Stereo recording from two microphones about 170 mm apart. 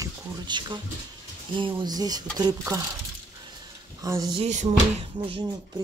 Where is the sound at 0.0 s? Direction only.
25° right (ahead or behind).